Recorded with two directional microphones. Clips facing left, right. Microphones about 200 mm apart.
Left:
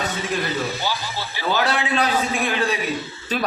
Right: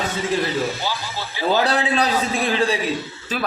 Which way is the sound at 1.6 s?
35° right (ahead or behind).